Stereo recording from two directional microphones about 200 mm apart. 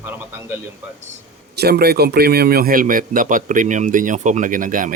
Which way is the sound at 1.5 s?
50° right (ahead or behind).